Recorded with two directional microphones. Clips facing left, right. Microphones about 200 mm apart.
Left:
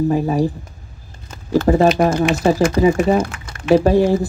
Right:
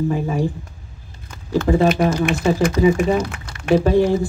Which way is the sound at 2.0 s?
50° left (ahead or behind).